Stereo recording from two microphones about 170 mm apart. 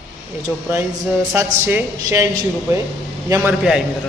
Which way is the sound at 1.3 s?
15° right (ahead or behind).